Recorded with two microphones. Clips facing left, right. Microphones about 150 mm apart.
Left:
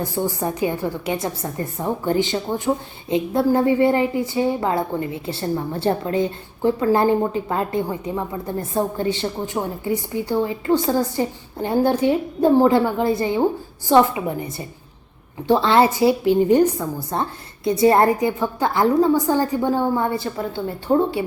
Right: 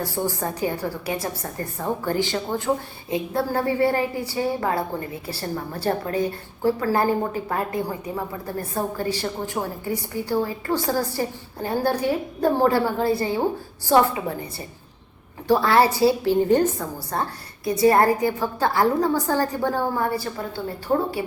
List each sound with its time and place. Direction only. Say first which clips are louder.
0.0 s a woman's voice: left 3 dB; 20° left (ahead or behind)
15.4 s a woman's voice: left 2 dB; 20° left (ahead or behind)